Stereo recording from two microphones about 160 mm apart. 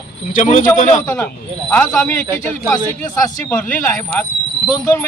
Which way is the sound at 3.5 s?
10° left (ahead or behind).